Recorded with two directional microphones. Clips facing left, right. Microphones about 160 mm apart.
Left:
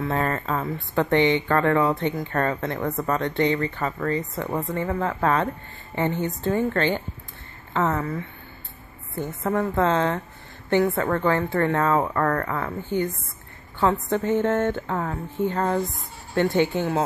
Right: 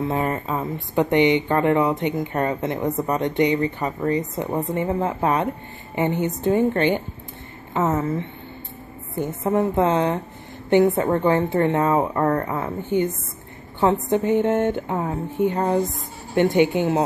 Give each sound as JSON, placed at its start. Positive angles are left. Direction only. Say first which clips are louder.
{"t": 0.0, "sound": "speech", "louder": "right 2 dB", "side_deg": -15}